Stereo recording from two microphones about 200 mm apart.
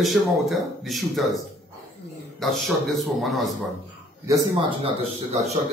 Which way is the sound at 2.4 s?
Centre (ahead or behind).